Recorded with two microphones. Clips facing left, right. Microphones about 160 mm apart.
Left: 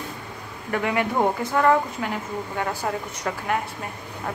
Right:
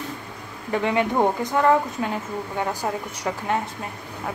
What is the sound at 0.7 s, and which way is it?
A woman's voice, 20° right (ahead or behind).